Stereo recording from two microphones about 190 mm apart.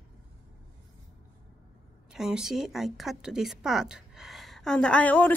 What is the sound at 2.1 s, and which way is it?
A woman's voice, centre (ahead or behind).